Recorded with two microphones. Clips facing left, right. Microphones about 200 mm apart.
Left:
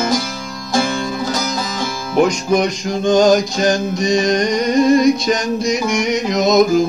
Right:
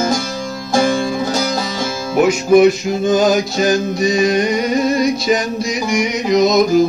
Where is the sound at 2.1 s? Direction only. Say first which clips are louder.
Right 4 dB; 5° right (ahead or behind).